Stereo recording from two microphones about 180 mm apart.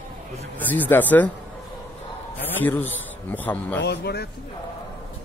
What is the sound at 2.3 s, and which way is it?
A man's voice, 10° left (ahead or behind).